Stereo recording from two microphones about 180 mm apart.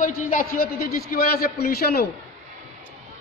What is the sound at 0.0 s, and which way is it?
A man's voice, 50° left (ahead or behind).